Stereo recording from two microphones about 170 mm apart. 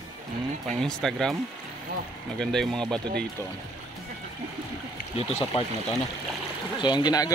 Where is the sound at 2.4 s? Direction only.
5° left (ahead or behind).